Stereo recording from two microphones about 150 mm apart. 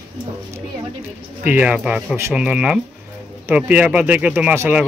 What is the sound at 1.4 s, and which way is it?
Speech, 10° right (ahead or behind).